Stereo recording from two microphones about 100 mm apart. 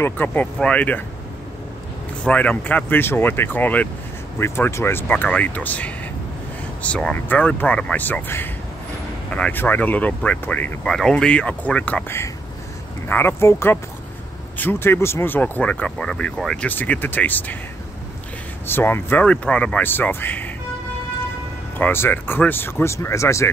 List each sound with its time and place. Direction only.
0.0 s speech: 20° left (ahead or behind)
2.2 s speech: 15° left (ahead or behind)
18.7 s speech: 20° left (ahead or behind)
21.7 s speech: 20° left (ahead or behind)